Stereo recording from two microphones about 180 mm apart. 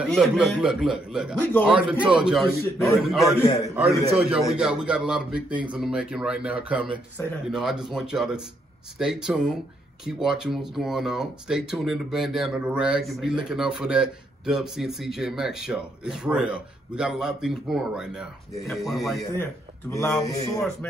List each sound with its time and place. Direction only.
0.1 s speech: centre (ahead or behind)
19.3 s speech: 15° left (ahead or behind)